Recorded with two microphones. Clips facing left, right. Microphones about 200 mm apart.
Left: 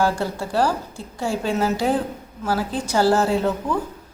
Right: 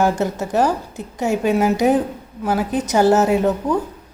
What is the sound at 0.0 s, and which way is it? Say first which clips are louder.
A woman's voice: right 3 dB; 20° right (ahead or behind).